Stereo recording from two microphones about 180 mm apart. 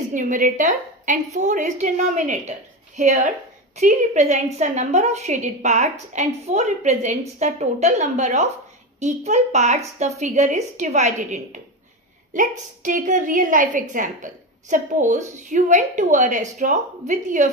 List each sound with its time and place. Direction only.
0.1 s a woman's voice: 45° right (ahead or behind)